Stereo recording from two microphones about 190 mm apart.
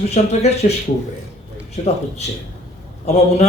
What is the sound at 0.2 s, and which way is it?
Speech, 35° left (ahead or behind).